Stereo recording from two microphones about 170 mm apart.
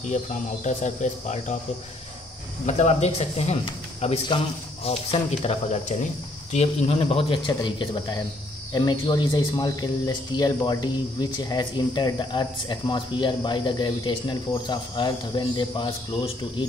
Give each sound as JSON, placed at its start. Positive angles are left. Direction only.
{"t": 0.0, "sound": "speech", "side_deg": 45}
{"t": 2.6, "sound": "speech", "side_deg": 40}